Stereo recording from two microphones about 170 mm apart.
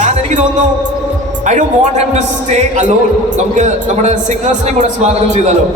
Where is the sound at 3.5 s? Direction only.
45° right (ahead or behind).